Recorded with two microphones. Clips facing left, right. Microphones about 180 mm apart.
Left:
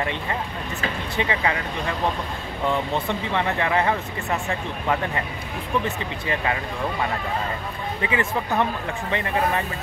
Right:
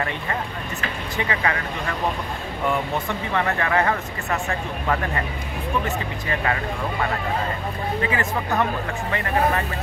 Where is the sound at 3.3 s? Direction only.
20° left (ahead or behind).